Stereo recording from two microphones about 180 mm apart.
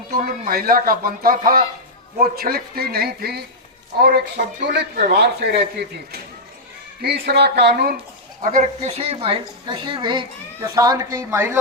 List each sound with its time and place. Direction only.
0.1 s a man's voice: 55° right (ahead or behind)
7.0 s a man's voice: 65° right (ahead or behind)
8.4 s a woman's voice: 45° right (ahead or behind); by 11.5 s 15° right (ahead or behind)